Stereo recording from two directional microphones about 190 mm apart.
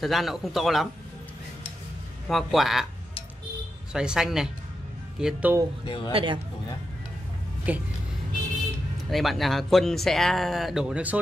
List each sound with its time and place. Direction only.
0.0 s speech: centre (ahead or behind)
2.2 s speech: centre (ahead or behind)
3.9 s speech: 5° right (ahead or behind)
5.9 s a man's voice: 25° left (ahead or behind)
6.1 s speech: 25° right (ahead or behind)
7.7 s speech: 10° right (ahead or behind)
9.1 s speech: centre (ahead or behind)